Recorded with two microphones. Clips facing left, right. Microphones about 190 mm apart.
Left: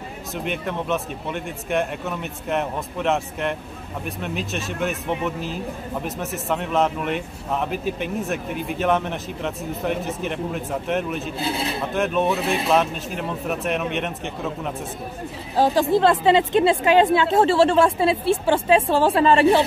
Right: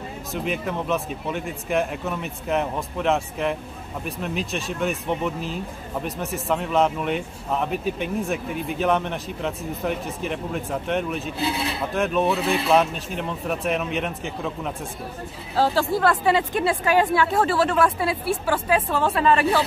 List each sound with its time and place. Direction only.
0.3 s a man's voice: centre (ahead or behind)
15.5 s a woman's voice: 15° left (ahead or behind)